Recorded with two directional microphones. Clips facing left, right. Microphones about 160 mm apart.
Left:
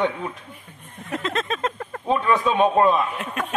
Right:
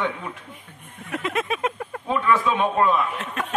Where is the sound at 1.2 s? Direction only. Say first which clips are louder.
Right 1 dB; 10° right (ahead or behind).